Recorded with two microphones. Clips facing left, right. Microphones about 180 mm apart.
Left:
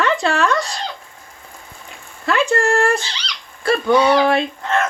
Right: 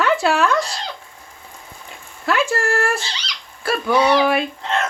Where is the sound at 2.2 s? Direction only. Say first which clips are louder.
Left 3 dB; 5° right (ahead or behind).